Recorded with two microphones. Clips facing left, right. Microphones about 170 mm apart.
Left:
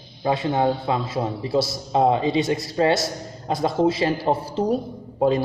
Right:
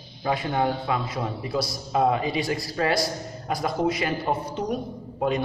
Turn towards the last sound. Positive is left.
turn(degrees=30)  # may be behind; listen again after turning